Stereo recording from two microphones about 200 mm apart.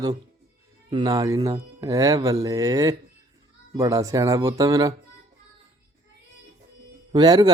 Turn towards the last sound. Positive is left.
turn(degrees=-20)  # may be behind; listen again after turning